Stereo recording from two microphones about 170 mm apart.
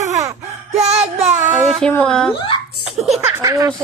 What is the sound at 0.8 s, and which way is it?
Child singing, 40° right (ahead or behind).